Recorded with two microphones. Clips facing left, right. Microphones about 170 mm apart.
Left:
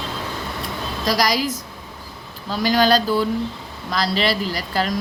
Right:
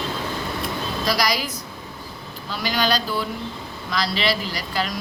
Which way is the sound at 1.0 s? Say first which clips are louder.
Left 4 dB; 40° left (ahead or behind).